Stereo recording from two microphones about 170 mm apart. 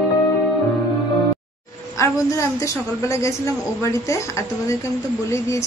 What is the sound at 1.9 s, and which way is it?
A woman's voice, 15° left (ahead or behind).